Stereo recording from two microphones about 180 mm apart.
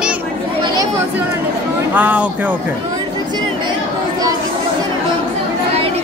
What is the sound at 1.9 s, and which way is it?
Speech, 10° right (ahead or behind).